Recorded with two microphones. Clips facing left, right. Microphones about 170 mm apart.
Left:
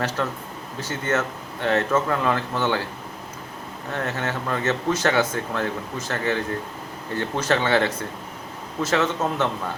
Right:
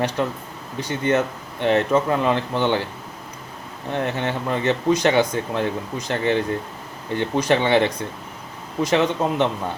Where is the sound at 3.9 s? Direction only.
15° right (ahead or behind).